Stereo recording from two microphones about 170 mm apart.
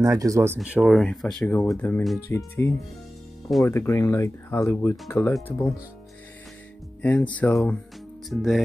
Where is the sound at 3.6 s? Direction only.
15° left (ahead or behind).